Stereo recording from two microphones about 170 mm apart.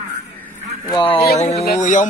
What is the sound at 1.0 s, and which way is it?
Speech, 30° left (ahead or behind).